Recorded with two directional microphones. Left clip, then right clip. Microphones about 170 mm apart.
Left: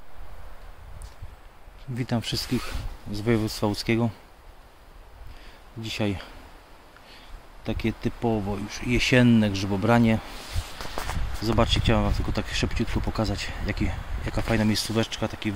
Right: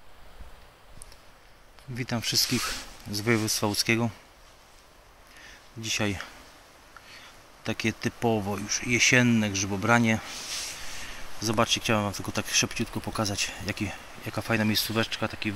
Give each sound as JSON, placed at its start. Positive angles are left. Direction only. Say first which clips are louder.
{"t": 2.0, "sound": "speech", "louder": "left 1 dB", "side_deg": 20}
{"t": 3.1, "sound": "speech", "louder": "even", "side_deg": 5}
{"t": 5.4, "sound": "a sound", "louder": "right 1 dB", "side_deg": 10}
{"t": 7.6, "sound": "speech", "louder": "even", "side_deg": 5}
{"t": 8.6, "sound": "speech", "louder": "right 3 dB", "side_deg": 15}
{"t": 11.4, "sound": "speech", "louder": "left 1 dB", "side_deg": 10}